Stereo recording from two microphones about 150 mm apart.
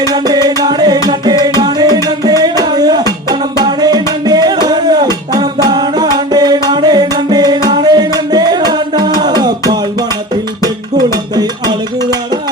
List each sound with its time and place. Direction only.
0.0 s music: 25° right (ahead or behind)